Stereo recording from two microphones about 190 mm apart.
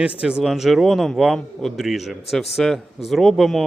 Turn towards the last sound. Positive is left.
turn(degrees=0)  # may be behind; listen again after turning